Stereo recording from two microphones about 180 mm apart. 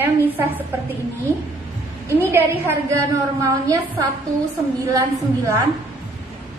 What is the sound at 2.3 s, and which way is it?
A woman's voice, 10° right (ahead or behind).